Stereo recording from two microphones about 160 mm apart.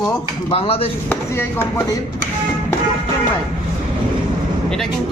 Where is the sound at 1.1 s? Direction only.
15° left (ahead or behind).